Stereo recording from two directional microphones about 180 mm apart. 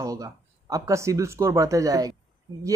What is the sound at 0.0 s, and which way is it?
Speech, 20° right (ahead or behind).